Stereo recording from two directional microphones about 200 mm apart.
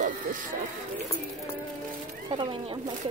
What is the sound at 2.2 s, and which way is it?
Speech, 25° right (ahead or behind).